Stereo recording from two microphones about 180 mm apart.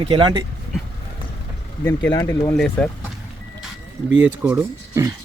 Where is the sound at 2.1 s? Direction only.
20° left (ahead or behind).